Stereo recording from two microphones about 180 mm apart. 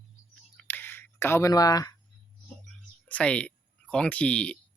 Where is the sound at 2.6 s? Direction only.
5° left (ahead or behind).